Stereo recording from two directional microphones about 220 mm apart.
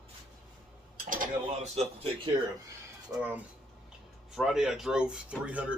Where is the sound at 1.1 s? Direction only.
35° right (ahead or behind).